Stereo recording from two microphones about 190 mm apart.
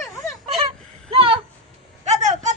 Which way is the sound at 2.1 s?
40° right (ahead or behind).